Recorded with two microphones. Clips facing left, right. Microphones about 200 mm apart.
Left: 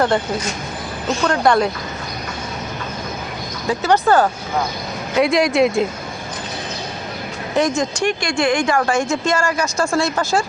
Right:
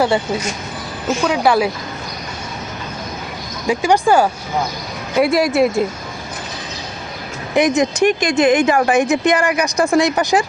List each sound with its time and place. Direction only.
1.0 s speech: 5° right (ahead or behind)
3.7 s speech: 15° right (ahead or behind)
7.8 s speech: 20° right (ahead or behind)